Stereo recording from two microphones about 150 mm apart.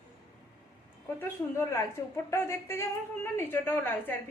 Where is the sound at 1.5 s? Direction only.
15° left (ahead or behind).